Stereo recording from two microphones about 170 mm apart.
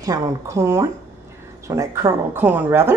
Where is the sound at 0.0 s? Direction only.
20° right (ahead or behind).